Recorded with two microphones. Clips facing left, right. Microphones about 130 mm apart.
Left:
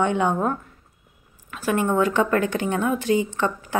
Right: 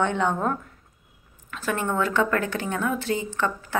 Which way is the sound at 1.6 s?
15° left (ahead or behind).